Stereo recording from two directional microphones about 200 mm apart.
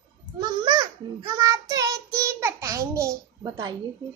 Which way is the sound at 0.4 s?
20° right (ahead or behind).